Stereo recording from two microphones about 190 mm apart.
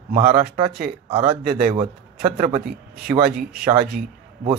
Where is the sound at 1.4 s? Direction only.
55° right (ahead or behind).